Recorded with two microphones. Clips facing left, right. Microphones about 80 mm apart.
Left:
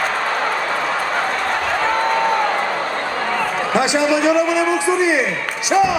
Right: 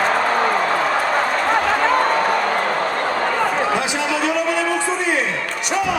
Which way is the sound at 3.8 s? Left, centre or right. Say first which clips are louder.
Left 5 dB; centre.